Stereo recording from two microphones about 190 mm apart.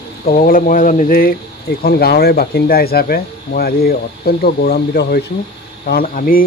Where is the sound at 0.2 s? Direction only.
50° left (ahead or behind).